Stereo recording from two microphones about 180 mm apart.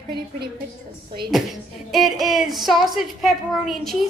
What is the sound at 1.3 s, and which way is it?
Speech, centre (ahead or behind).